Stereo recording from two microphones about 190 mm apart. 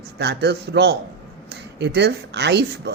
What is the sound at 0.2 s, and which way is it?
A woman's voice, 60° right (ahead or behind).